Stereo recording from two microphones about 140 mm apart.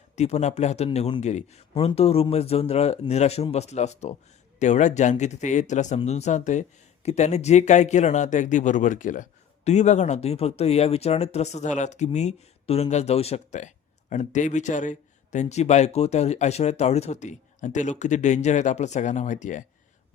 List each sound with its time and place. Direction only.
0.2 s speech: 50° left (ahead or behind)